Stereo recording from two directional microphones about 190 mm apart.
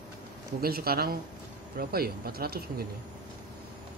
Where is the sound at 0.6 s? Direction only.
50° right (ahead or behind).